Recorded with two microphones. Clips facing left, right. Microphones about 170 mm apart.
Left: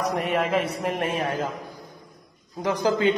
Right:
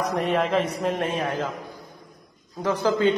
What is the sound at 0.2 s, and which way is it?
Speech, 5° left (ahead or behind).